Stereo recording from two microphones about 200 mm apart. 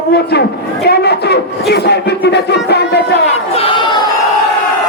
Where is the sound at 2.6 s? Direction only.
55° left (ahead or behind).